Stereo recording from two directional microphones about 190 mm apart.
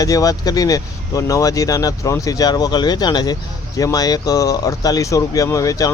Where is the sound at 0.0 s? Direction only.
20° left (ahead or behind).